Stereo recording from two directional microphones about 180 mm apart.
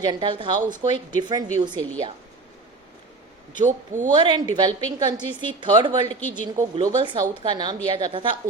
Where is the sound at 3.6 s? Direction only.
45° right (ahead or behind).